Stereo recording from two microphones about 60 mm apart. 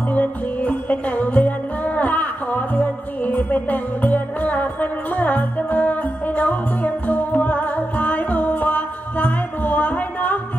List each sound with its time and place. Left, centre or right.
0.1 s music: left